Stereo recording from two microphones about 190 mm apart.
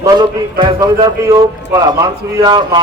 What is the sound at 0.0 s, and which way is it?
A man's voice, 20° right (ahead or behind).